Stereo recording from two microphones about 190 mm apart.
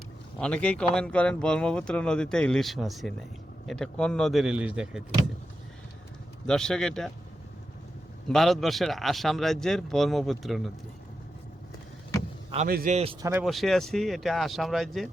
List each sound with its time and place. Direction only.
0.3 s speech: 5° left (ahead or behind)
6.4 s speech: 5° left (ahead or behind)
8.3 s speech: centre (ahead or behind)
12.6 s a man's voice: 50° right (ahead or behind)
13.4 s speech: centre (ahead or behind)